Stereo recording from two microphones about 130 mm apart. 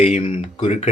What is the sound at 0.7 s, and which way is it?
Speech, 60° left (ahead or behind).